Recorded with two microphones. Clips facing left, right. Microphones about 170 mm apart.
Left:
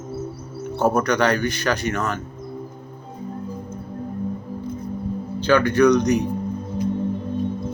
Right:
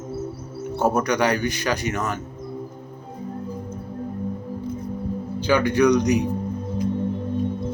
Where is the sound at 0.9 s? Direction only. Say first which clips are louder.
Left 2 dB; 15° right (ahead or behind).